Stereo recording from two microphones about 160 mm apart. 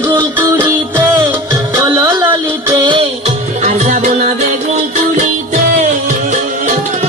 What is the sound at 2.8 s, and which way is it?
Music, 30° right (ahead or behind).